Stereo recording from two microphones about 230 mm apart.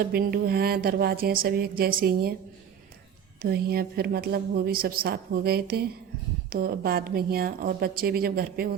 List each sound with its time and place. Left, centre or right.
0.0 s speech: right
3.4 s speech: right